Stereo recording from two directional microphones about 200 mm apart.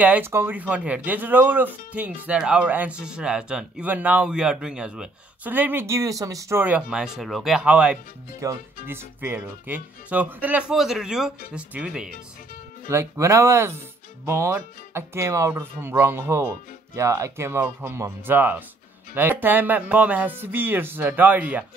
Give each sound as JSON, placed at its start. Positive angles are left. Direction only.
{"t": 0.0, "sound": "speech", "side_deg": -10}
{"t": 8.4, "sound": "speech", "side_deg": -15}